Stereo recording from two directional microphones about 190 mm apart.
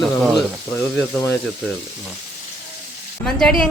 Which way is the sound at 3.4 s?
5° left (ahead or behind).